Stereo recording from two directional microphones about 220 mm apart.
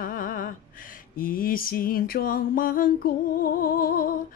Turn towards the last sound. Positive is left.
turn(degrees=40)  # may be behind; listen again after turning